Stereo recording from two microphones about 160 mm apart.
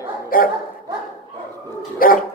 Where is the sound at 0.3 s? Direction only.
65° left (ahead or behind).